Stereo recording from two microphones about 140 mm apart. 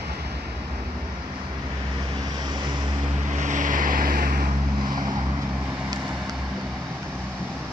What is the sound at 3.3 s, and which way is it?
Vehicle, 60° right (ahead or behind).